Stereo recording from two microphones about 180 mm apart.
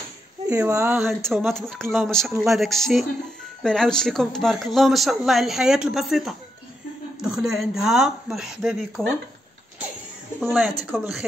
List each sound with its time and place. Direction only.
0.5 s speech: 15° right (ahead or behind)
0.9 s speech: centre (ahead or behind)
10.9 s speech: 5° right (ahead or behind)